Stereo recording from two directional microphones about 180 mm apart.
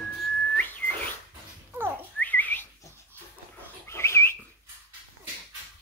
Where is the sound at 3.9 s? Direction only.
15° left (ahead or behind).